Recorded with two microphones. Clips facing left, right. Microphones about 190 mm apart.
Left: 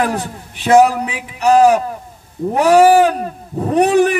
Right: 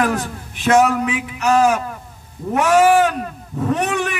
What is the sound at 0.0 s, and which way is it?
A man's voice, 35° left (ahead or behind).